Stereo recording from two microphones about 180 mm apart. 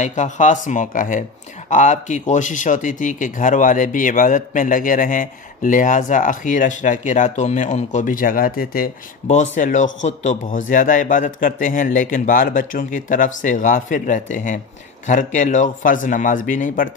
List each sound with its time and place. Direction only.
0.0 s a man's voice: 40° left (ahead or behind)